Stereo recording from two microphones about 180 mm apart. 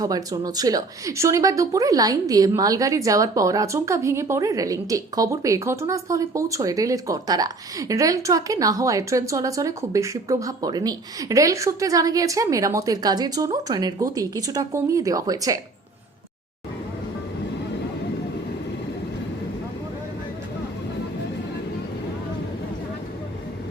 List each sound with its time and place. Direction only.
0.0 s a woman's voice: 20° right (ahead or behind)